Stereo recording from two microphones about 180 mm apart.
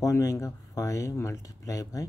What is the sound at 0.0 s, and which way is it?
Speech, 15° left (ahead or behind).